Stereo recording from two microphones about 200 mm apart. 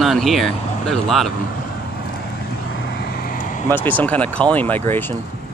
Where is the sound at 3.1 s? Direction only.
45° left (ahead or behind).